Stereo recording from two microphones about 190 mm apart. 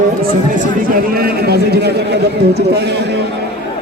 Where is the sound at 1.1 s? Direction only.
55° right (ahead or behind).